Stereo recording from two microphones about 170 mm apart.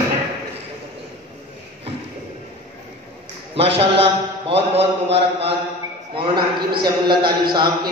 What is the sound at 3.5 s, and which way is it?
A man's voice, 35° right (ahead or behind).